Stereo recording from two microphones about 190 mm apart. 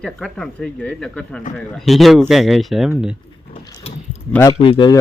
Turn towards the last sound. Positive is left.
turn(degrees=25)  # may be behind; listen again after turning